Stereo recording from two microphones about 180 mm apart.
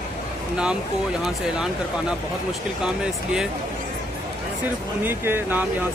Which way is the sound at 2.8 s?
5° right (ahead or behind).